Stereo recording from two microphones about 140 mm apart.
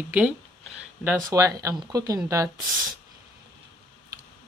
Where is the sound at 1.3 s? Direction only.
25° right (ahead or behind).